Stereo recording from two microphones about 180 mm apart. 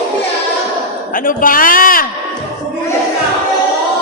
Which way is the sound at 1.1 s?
50° left (ahead or behind).